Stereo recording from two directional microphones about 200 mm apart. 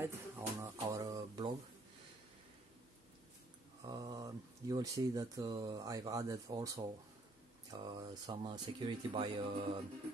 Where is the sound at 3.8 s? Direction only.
20° right (ahead or behind).